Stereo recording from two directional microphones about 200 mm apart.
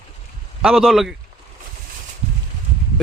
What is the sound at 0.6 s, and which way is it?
Speech, 5° right (ahead or behind).